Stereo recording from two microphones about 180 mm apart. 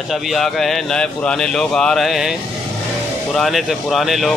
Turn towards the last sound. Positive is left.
turn(degrees=0)  # may be behind; listen again after turning